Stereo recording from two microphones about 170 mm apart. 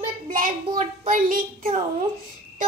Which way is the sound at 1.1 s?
55° right (ahead or behind).